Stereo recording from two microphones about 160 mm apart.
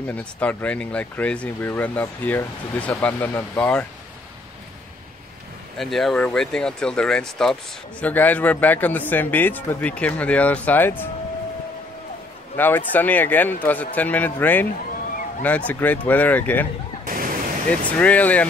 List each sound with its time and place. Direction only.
0.0 s speech: 10° left (ahead or behind)
5.8 s speech: centre (ahead or behind)
12.5 s speech: 10° left (ahead or behind)
17.0 s a sound: 60° right (ahead or behind)
17.6 s speech: 10° left (ahead or behind)